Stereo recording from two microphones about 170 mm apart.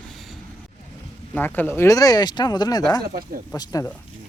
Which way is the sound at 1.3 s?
10° left (ahead or behind).